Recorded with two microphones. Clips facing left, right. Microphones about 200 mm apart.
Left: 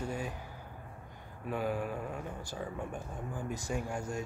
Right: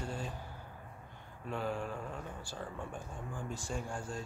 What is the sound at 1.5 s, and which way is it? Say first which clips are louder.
Speech: left 3 dB; 10° left (ahead or behind).